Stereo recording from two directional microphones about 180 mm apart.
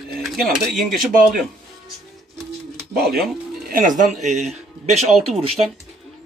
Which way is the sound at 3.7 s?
50° right (ahead or behind).